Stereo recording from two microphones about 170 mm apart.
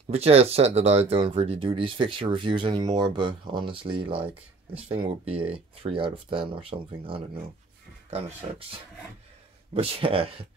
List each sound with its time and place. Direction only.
0.1 s speech: 35° right (ahead or behind)
9.8 s speech: 30° right (ahead or behind)